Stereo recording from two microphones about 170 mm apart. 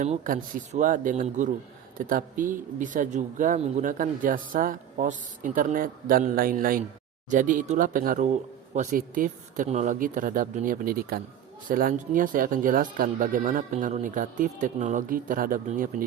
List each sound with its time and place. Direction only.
0.0 s speech: 50° right (ahead or behind)